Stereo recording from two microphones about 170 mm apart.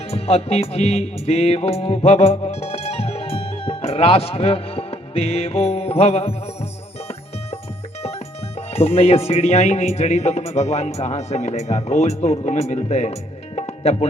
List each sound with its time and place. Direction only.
0.1 s music: 35° left (ahead or behind)
8.5 s speech: 35° left (ahead or behind)
13.6 s music: 40° left (ahead or behind)